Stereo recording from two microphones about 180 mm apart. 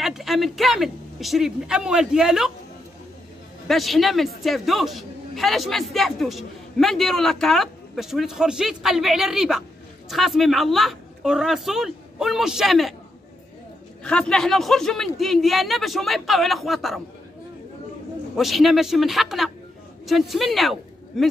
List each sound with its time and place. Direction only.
0.0 s speech: centre (ahead or behind)
3.6 s a man's voice: centre (ahead or behind)
14.0 s a man's voice: 5° left (ahead or behind)
18.3 s a man's voice: centre (ahead or behind)